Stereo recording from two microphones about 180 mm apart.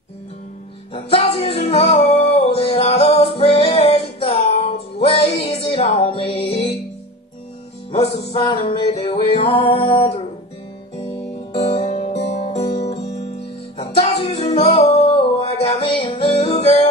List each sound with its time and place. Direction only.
0.9 s music: 35° left (ahead or behind)
7.9 s music: 35° left (ahead or behind)
11.6 s music: 35° left (ahead or behind)